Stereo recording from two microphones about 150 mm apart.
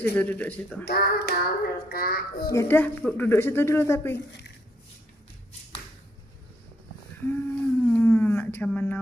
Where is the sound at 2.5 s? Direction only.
15° left (ahead or behind).